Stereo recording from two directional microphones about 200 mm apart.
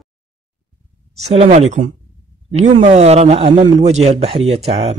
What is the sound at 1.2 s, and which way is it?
A man's voice, 30° right (ahead or behind).